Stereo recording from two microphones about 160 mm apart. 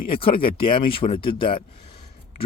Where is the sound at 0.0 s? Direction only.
35° left (ahead or behind).